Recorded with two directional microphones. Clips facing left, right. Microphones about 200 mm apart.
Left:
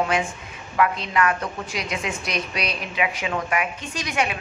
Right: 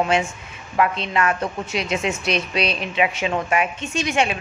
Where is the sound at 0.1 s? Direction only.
25° right (ahead or behind).